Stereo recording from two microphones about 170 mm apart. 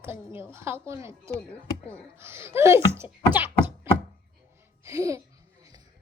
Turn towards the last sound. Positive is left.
turn(degrees=-20)  # may be behind; listen again after turning